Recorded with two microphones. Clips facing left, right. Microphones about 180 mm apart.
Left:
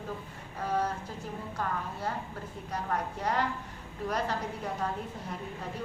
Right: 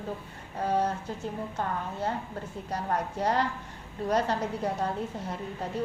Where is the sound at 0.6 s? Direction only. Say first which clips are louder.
Right 4 dB; 30° right (ahead or behind).